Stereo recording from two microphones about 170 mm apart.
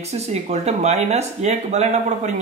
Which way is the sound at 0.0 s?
40° right (ahead or behind).